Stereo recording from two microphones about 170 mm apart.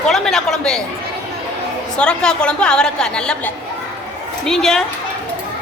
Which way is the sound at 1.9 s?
5° left (ahead or behind).